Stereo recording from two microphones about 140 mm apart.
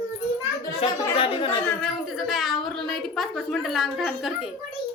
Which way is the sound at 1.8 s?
Centre (ahead or behind).